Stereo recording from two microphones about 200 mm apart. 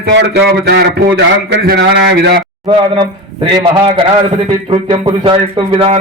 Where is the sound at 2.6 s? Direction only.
20° right (ahead or behind).